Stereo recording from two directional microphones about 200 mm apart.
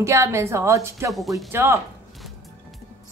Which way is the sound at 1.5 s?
10° right (ahead or behind).